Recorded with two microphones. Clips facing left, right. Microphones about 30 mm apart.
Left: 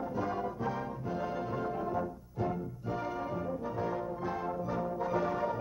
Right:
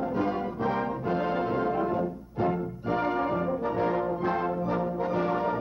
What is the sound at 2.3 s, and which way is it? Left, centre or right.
Brass instrument, right.